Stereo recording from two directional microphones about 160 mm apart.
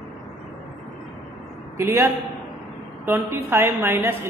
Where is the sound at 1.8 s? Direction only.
15° right (ahead or behind).